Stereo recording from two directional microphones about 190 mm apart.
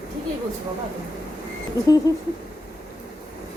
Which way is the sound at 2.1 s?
20° left (ahead or behind).